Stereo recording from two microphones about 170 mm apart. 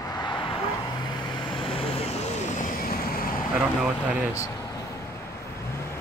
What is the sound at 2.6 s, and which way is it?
Vehicle, 60° left (ahead or behind).